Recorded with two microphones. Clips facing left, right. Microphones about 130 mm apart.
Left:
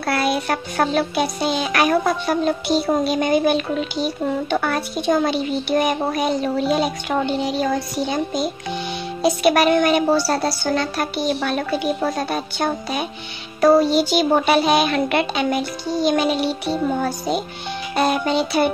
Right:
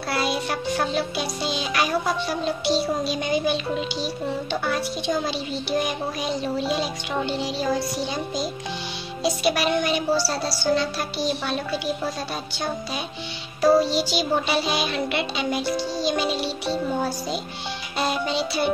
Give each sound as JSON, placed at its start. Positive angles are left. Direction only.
{"t": 0.0, "sound": "music", "side_deg": 60}